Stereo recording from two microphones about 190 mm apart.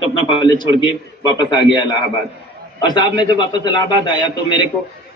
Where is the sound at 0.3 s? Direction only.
20° left (ahead or behind).